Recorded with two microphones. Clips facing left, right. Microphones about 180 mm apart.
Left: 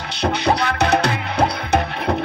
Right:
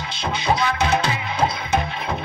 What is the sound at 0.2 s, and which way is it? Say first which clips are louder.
Music: left 3 dB; 65° left (ahead or behind).